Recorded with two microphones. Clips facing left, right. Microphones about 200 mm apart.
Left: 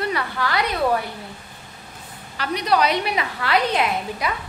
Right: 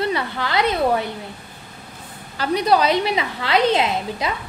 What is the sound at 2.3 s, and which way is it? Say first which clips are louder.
A woman's voice: right 3 dB; 30° right (ahead or behind).